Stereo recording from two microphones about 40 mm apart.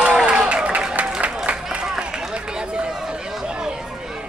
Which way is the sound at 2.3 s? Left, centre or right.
Right.